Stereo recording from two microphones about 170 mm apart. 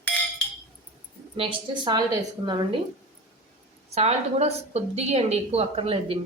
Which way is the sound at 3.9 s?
40° right (ahead or behind).